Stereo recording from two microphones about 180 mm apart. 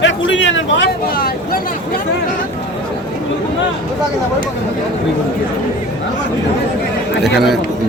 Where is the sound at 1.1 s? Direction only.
55° left (ahead or behind).